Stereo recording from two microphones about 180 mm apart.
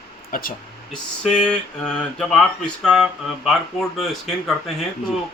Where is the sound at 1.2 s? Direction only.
5° left (ahead or behind).